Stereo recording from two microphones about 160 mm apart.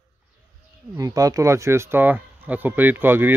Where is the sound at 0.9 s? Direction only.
20° right (ahead or behind).